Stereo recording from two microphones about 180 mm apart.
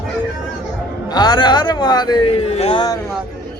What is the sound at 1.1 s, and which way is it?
Speech, 25° left (ahead or behind).